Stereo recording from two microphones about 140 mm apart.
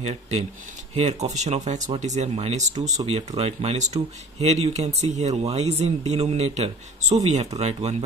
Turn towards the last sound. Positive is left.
turn(degrees=-50)  # may be behind; listen again after turning